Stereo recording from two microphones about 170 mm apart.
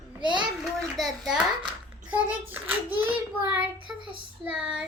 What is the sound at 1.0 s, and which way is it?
A child's voice, centre (ahead or behind).